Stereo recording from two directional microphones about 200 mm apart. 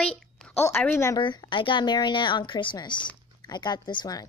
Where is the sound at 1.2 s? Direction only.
25° left (ahead or behind).